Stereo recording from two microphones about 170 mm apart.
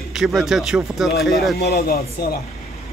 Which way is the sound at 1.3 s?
65° left (ahead or behind).